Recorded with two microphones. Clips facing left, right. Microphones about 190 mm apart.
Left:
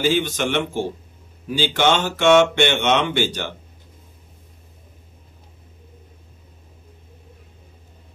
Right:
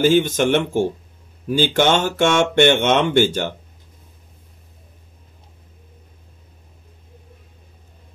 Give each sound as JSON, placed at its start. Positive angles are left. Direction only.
{"t": 0.0, "sound": "speech", "side_deg": -45}